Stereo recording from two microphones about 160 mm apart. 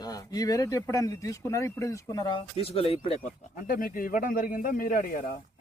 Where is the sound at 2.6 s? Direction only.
35° left (ahead or behind).